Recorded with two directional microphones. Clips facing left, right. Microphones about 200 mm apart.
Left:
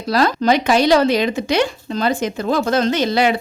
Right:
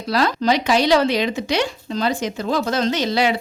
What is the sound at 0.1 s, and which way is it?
A woman's voice, 45° left (ahead or behind).